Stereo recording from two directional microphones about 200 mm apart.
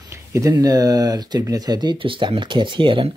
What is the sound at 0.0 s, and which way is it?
Speech, 15° right (ahead or behind).